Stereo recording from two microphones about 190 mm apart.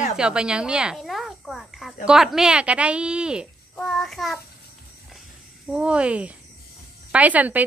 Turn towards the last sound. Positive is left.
turn(degrees=-10)  # may be behind; listen again after turning